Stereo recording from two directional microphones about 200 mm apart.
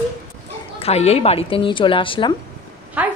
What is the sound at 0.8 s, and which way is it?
Speech, 30° left (ahead or behind).